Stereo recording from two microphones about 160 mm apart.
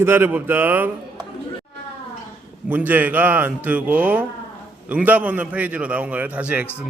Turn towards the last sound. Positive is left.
turn(degrees=-10)  # may be behind; listen again after turning